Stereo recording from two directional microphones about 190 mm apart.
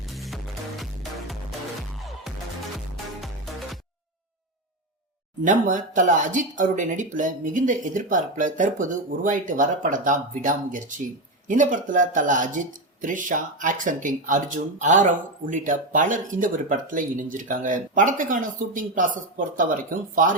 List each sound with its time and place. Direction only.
0.1 s music: centre (ahead or behind)
2.9 s music: centre (ahead or behind)
5.4 s speech: 40° right (ahead or behind)